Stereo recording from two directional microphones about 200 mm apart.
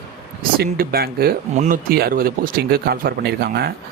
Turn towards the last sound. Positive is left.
turn(degrees=-50)  # may be behind; listen again after turning